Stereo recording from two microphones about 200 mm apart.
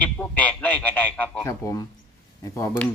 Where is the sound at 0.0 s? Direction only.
5° left (ahead or behind).